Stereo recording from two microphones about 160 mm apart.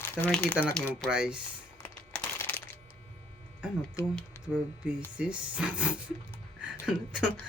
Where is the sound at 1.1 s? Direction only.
5° right (ahead or behind).